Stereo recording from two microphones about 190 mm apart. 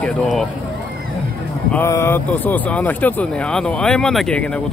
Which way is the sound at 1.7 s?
15° left (ahead or behind).